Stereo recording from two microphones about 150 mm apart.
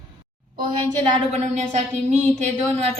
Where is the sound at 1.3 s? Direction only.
50° right (ahead or behind).